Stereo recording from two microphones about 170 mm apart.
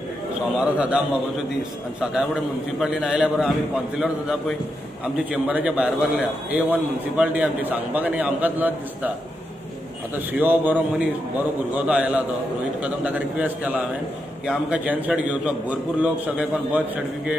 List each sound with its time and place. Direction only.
0.6 s a man's voice: 5° right (ahead or behind)
2.8 s a man's voice: 5° right (ahead or behind)
10.1 s a man's voice: 10° right (ahead or behind)